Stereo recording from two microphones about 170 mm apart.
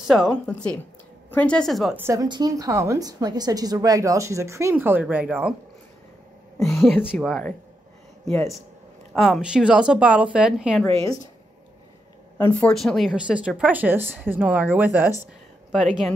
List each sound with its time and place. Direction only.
0.0 s speech: centre (ahead or behind)
2.0 s speech: 15° right (ahead or behind)
6.6 s speech: centre (ahead or behind)
8.3 s speech: 15° left (ahead or behind)
9.1 s speech: centre (ahead or behind)
12.4 s speech: 10° left (ahead or behind); by 15.1 s 10° right (ahead or behind)